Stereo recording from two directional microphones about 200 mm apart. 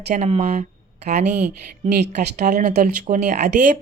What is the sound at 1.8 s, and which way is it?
Speech, 35° right (ahead or behind).